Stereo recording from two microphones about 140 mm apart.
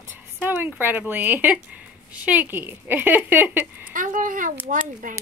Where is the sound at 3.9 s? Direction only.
70° right (ahead or behind).